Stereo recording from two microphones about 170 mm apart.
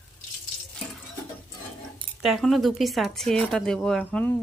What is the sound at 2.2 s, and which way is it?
Speech, centre (ahead or behind).